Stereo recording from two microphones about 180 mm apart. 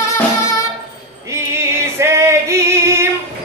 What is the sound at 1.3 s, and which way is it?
Female singing, 15° right (ahead or behind).